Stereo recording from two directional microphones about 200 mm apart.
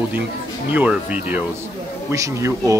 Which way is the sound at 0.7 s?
5° right (ahead or behind).